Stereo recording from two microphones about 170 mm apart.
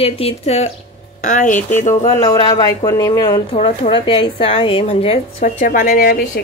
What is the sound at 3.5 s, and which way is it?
Speech, 40° left (ahead or behind).